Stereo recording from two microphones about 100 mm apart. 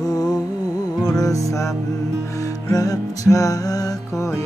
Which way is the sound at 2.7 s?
35° left (ahead or behind).